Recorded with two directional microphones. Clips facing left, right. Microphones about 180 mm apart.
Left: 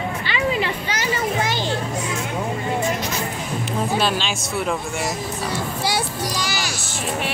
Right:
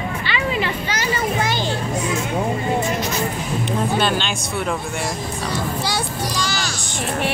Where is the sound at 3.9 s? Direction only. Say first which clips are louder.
Right 1 dB; centre (ahead or behind).